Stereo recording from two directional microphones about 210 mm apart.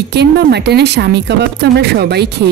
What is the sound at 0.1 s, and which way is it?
Speech, 50° right (ahead or behind).